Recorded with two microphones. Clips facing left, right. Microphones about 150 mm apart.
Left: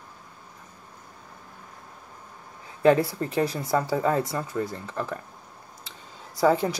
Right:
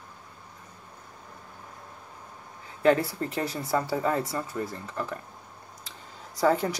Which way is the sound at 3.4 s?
25° left (ahead or behind).